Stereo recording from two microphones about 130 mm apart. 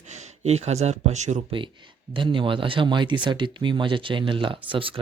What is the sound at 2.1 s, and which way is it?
Speech, 40° right (ahead or behind).